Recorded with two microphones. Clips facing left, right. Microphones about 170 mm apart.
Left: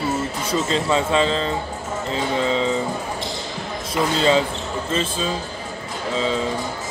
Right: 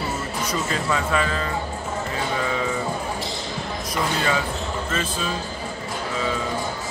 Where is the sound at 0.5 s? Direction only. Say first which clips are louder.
Left 5 dB; 25° left (ahead or behind).